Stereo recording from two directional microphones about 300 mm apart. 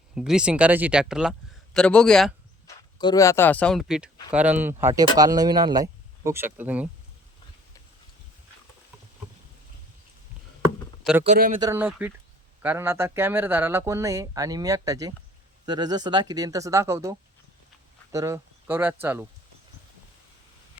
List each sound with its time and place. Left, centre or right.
0.1 s a man's voice: centre
3.0 s speech: centre
11.2 s speech: right
11.6 s speech: centre